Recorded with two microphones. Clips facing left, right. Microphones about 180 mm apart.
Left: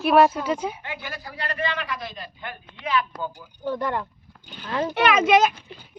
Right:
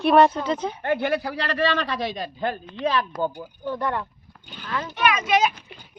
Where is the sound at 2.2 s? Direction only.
35° right (ahead or behind).